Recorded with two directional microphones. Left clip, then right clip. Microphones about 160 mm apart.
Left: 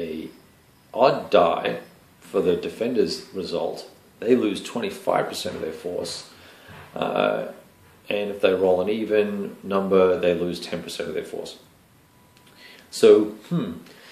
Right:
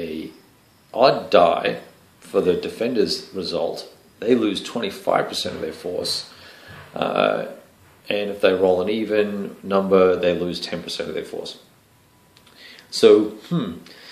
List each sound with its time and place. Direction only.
0.0 s a sound: 20° right (ahead or behind)
0.9 s speech: 20° right (ahead or behind)
12.5 s speech: 15° right (ahead or behind)